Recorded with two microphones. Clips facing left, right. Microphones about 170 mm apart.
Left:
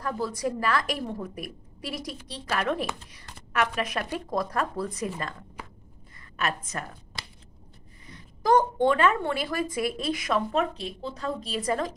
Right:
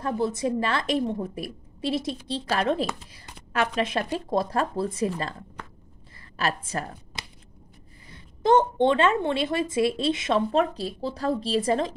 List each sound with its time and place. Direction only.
0.0 s a woman's voice: 25° right (ahead or behind)
6.3 s a woman's voice: 30° right (ahead or behind)
8.1 s a woman's voice: 25° right (ahead or behind)